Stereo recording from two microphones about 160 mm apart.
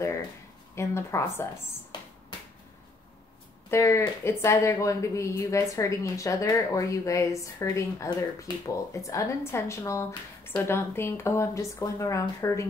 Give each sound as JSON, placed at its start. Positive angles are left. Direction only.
{"t": 0.7, "sound": "a woman's voice", "side_deg": 15}
{"t": 3.7, "sound": "a woman's voice", "side_deg": 15}